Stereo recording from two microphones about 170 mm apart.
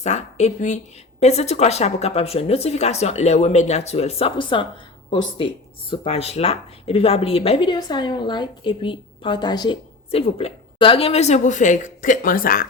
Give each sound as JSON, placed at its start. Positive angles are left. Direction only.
{"t": 0.0, "sound": "a woman's voice", "side_deg": 40}
{"t": 5.9, "sound": "a woman's voice", "side_deg": 35}